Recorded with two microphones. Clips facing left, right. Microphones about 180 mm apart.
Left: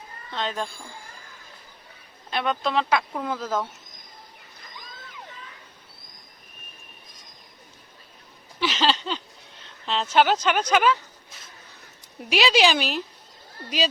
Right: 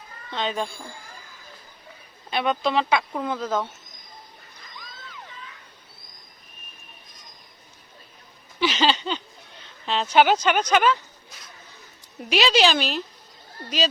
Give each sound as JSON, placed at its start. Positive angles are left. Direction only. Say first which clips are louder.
{"t": 0.3, "sound": "speech", "louder": "right 2 dB", "side_deg": 0}
{"t": 2.3, "sound": "speech", "louder": "right 2 dB", "side_deg": -5}
{"t": 8.6, "sound": "a sound", "louder": "right 2 dB", "side_deg": 0}
{"t": 9.8, "sound": "speech", "louder": "right 2 dB", "side_deg": 0}
{"t": 12.3, "sound": "a woman's voice", "louder": "even", "side_deg": 5}